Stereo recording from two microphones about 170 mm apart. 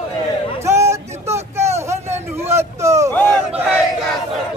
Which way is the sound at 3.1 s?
10° left (ahead or behind).